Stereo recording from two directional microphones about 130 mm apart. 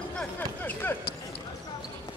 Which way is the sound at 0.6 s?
15° left (ahead or behind).